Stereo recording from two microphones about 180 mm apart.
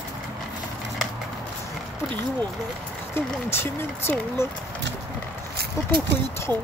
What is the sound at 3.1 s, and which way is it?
Speech, 15° left (ahead or behind).